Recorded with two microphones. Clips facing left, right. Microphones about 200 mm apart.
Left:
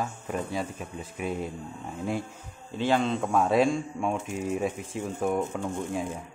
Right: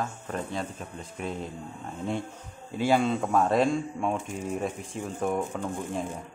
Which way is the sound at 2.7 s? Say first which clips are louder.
Right 1 dB; 10° right (ahead or behind).